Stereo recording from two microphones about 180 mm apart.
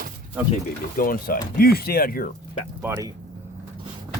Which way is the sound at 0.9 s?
50° left (ahead or behind).